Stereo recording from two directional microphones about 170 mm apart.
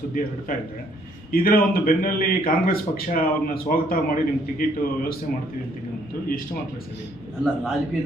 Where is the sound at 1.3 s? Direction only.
60° left (ahead or behind).